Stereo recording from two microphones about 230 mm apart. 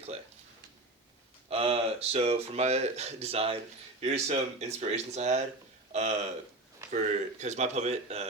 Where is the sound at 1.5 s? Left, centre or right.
Right.